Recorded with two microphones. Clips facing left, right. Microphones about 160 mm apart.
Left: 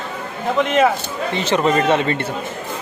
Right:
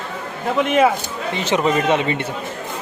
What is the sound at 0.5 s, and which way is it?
Speech, 5° right (ahead or behind).